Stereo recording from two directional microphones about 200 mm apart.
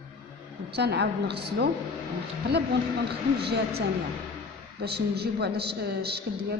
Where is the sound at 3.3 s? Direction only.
55° right (ahead or behind).